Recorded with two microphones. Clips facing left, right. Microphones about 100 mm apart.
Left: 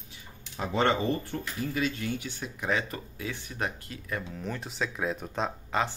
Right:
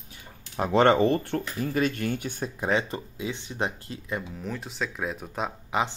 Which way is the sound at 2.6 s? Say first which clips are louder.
Right 4 dB; 25° right (ahead or behind).